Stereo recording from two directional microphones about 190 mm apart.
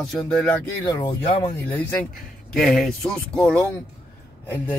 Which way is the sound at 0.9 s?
15° left (ahead or behind).